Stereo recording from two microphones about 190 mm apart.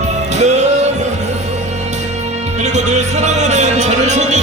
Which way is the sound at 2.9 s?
35° right (ahead or behind).